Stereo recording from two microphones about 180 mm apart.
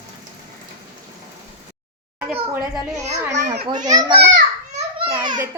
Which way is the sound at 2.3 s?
5° right (ahead or behind).